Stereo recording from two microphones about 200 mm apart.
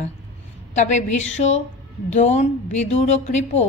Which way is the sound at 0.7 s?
35° left (ahead or behind).